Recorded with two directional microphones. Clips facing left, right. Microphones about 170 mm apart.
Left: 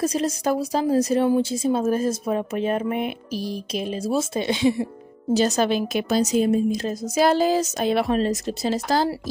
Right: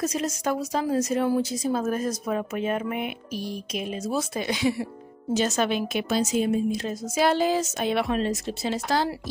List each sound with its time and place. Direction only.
0.0 s a woman's voice: 30° left (ahead or behind)
5.3 s a woman's voice: 35° left (ahead or behind)